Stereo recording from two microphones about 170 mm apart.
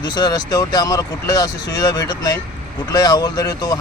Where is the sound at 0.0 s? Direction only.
25° left (ahead or behind).